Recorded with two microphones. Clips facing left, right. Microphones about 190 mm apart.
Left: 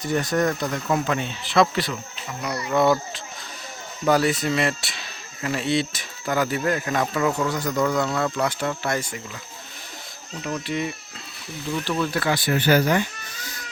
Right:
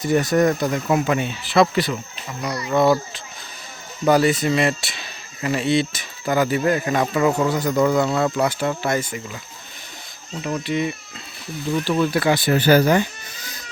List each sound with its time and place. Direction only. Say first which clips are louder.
0.0 s speech: right 5 dB; 10° right (ahead or behind)
4.0 s speech: right 4 dB; centre (ahead or behind)
10.4 s speech: right 4 dB; 5° right (ahead or behind)
11.9 s speech: right 5 dB; 15° right (ahead or behind)
12.4 s speech: right 3 dB; 35° right (ahead or behind)